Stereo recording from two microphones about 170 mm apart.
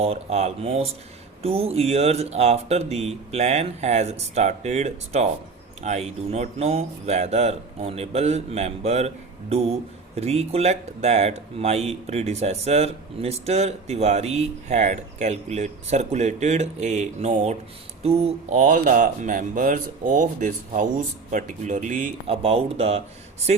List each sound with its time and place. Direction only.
0.0 s speech: 40° right (ahead or behind)
18.6 s speech: 50° right (ahead or behind)
22.3 s speech: 35° right (ahead or behind)